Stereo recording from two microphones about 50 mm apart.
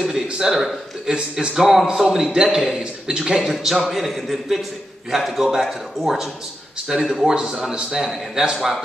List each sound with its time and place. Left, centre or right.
0.0 s a man's voice: centre